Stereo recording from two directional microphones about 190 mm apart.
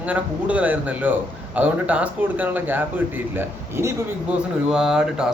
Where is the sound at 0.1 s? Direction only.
5° right (ahead or behind).